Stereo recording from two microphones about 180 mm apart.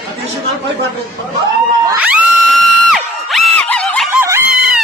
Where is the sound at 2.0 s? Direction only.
5° right (ahead or behind).